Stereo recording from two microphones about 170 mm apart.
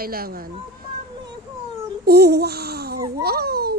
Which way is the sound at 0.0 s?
60° right (ahead or behind).